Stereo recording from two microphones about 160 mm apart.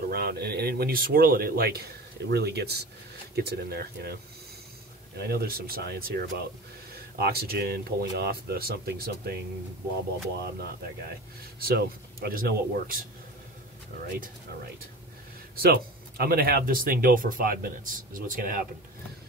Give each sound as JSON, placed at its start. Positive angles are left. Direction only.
{"t": 0.1, "sound": "speech", "side_deg": -75}
{"t": 11.6, "sound": "speech", "side_deg": -70}
{"t": 15.6, "sound": "speech", "side_deg": -75}